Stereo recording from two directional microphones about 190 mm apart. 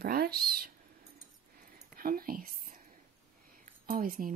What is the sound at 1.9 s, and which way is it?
Whispering, 50° right (ahead or behind).